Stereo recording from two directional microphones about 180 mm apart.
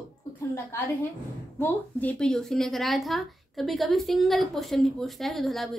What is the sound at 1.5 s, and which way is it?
A woman's voice, 10° left (ahead or behind).